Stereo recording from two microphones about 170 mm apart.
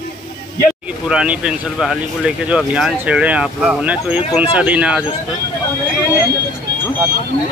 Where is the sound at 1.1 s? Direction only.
5° right (ahead or behind).